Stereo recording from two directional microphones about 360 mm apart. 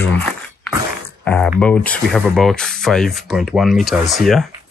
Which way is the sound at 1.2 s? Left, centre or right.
Centre.